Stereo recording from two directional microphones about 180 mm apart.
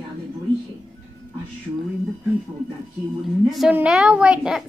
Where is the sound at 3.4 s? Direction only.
Centre (ahead or behind).